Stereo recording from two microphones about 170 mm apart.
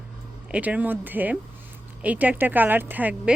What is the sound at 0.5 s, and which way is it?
Speech, 10° right (ahead or behind).